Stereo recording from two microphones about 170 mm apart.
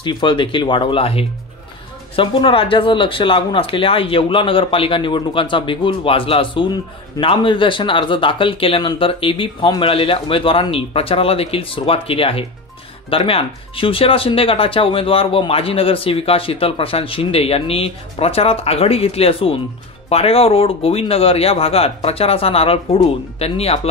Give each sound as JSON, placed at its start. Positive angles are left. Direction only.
{"t": 0.0, "sound": "speech", "side_deg": 30}